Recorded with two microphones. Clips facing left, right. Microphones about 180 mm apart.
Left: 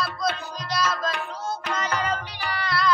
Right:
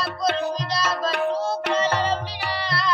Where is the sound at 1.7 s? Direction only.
35° right (ahead or behind).